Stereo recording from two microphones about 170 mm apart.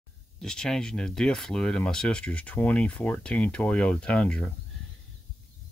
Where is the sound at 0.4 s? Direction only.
5° left (ahead or behind).